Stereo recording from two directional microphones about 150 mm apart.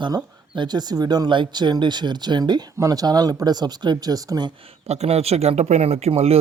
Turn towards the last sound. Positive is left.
turn(degrees=-40)  # may be behind; listen again after turning